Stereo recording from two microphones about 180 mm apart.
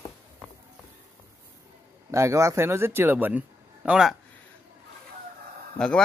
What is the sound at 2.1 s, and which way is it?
A man's voice, 15° right (ahead or behind).